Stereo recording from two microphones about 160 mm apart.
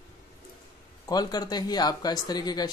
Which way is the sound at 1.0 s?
25° left (ahead or behind).